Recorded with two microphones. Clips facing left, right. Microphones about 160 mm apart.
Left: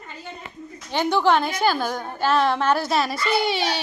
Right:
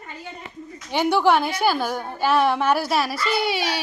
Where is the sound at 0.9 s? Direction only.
10° right (ahead or behind).